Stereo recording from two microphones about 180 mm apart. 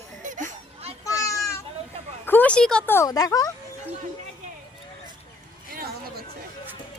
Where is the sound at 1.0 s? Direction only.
20° left (ahead or behind).